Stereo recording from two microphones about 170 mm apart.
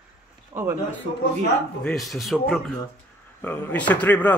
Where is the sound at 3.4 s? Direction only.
10° left (ahead or behind).